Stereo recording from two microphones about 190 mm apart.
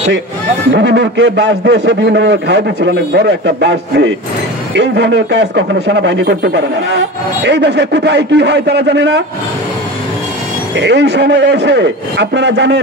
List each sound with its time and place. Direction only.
0.7 s a man's voice: 65° right (ahead or behind)
10.8 s a man's voice: 65° right (ahead or behind)